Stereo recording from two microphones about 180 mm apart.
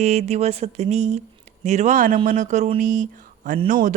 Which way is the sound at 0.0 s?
40° right (ahead or behind).